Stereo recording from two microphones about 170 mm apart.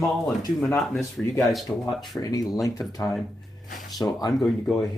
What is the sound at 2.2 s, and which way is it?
Speech, 20° left (ahead or behind).